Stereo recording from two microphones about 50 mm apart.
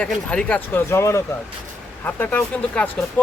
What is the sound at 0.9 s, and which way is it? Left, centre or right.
Speech, left.